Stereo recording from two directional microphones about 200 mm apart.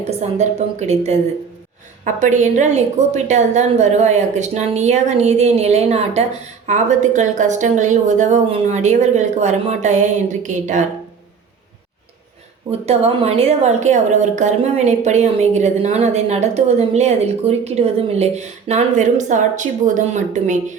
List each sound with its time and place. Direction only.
0.0 s a woman's voice: 35° right (ahead or behind)
12.8 s a woman's voice: 30° right (ahead or behind)